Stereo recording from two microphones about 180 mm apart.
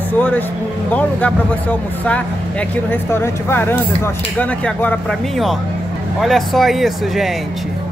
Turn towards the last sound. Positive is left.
turn(degrees=0)  # may be behind; listen again after turning